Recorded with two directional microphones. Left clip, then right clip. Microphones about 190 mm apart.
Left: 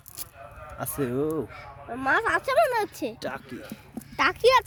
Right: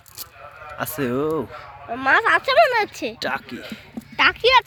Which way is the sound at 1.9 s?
40° left (ahead or behind).